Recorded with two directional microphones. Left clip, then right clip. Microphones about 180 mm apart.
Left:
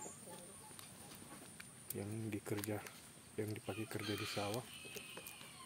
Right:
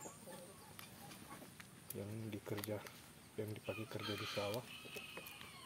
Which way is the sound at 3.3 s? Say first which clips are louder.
Left 1 dB; 30° left (ahead or behind).